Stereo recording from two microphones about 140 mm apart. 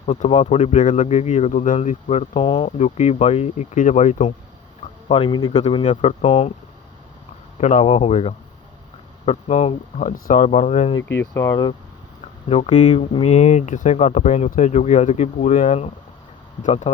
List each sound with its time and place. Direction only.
0.0 s speech: 60° left (ahead or behind)
0.3 s speech: 45° left (ahead or behind)
2.3 s speech: 40° left (ahead or behind)
2.6 s speech: 55° left (ahead or behind)
4.8 s a sound: 40° left (ahead or behind)
5.5 s speech: 50° left (ahead or behind)
7.6 s speech: 60° left (ahead or behind)
9.2 s speech: 50° left (ahead or behind)
11.1 s speech: 20° left (ahead or behind)
12.5 s speech: 45° left (ahead or behind)